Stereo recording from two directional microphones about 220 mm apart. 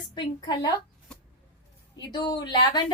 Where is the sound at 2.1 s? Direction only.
20° left (ahead or behind).